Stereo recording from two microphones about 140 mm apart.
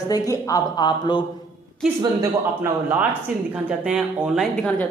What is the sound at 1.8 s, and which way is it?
Speech, 5° right (ahead or behind).